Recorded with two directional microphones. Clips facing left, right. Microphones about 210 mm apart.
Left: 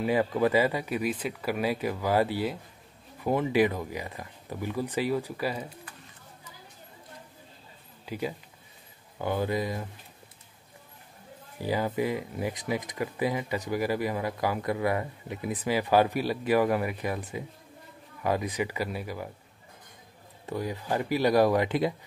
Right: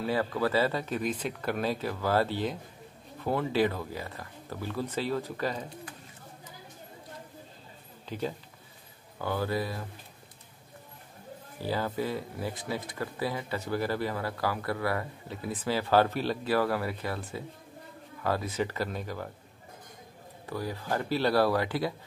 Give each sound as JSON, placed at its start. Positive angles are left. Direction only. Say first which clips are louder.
{"t": 0.0, "sound": "speech", "louder": "left 4 dB", "side_deg": 15}
{"t": 8.0, "sound": "speech", "louder": "left 1 dB", "side_deg": 10}
{"t": 11.6, "sound": "speech", "louder": "left 3 dB", "side_deg": 15}
{"t": 20.4, "sound": "speech", "louder": "left 2 dB", "side_deg": 20}